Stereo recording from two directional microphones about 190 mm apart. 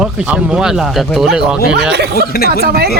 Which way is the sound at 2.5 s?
55° right (ahead or behind).